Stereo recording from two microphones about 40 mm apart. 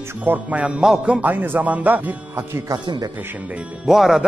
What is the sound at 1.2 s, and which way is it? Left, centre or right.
Speech, right.